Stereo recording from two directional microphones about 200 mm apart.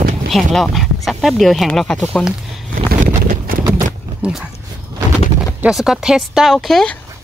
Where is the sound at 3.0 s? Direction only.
45° right (ahead or behind).